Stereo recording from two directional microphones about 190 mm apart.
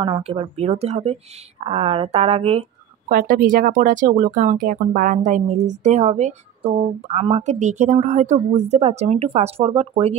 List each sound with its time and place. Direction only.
0.0 s speech: 30° right (ahead or behind)
3.1 s speech: 50° right (ahead or behind); by 10.1 s 30° right (ahead or behind)